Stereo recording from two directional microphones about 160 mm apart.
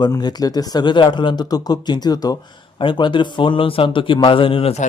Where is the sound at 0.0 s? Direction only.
25° left (ahead or behind).